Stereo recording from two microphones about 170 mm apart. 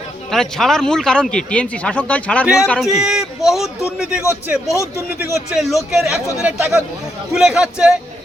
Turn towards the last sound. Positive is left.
turn(degrees=-5)  # may be behind; listen again after turning